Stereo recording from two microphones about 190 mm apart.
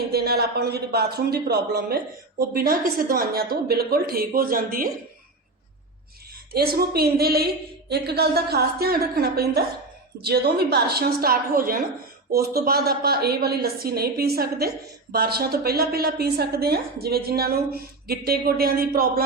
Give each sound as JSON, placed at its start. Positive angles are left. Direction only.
{"t": 0.1, "sound": "a woman's voice", "side_deg": -55}
{"t": 6.5, "sound": "a woman's voice", "side_deg": -55}